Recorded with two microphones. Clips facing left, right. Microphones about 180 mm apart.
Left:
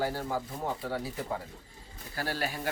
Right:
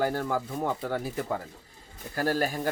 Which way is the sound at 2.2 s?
45° right (ahead or behind).